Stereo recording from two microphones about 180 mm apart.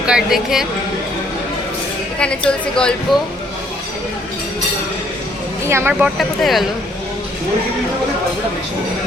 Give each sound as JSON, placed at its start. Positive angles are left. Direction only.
{"t": 0.0, "sound": "a woman's voice", "side_deg": -5}
{"t": 2.1, "sound": "a woman's voice", "side_deg": 5}
{"t": 5.6, "sound": "speech", "side_deg": -15}
{"t": 5.9, "sound": "a woman's voice", "side_deg": 0}